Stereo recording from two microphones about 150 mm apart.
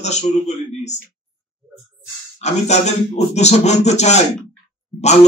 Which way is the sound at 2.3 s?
50° left (ahead or behind).